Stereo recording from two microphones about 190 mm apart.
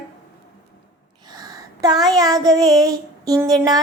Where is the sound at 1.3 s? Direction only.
20° right (ahead or behind).